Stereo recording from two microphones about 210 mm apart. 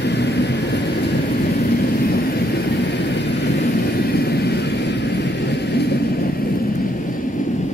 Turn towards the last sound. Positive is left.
turn(degrees=50)  # may be behind; listen again after turning